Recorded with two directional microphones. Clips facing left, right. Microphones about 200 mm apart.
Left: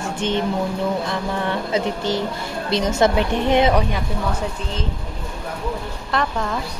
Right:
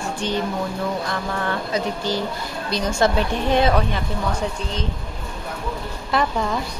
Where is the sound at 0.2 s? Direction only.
20° left (ahead or behind).